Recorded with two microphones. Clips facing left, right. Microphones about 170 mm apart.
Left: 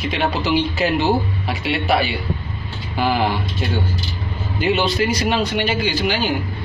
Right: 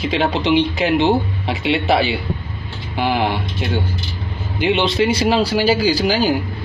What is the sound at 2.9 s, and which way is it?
A man's voice, 15° right (ahead or behind).